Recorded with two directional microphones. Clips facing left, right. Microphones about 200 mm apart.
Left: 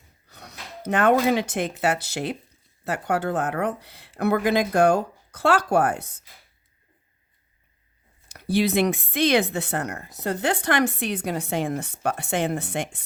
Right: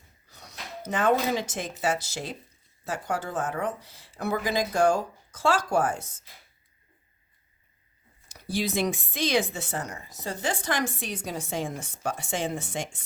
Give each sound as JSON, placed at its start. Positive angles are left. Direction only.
{"t": 0.3, "sound": "speech", "side_deg": 60}
{"t": 8.3, "sound": "speech", "side_deg": 60}